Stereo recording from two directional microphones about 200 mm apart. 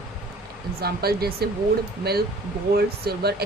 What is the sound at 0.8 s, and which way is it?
A woman's voice, 50° right (ahead or behind).